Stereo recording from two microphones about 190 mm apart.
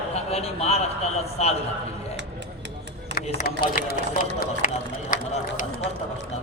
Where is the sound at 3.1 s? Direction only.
55° left (ahead or behind).